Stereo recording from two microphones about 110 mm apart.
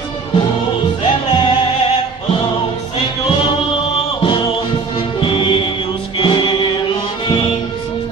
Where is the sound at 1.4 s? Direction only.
55° left (ahead or behind).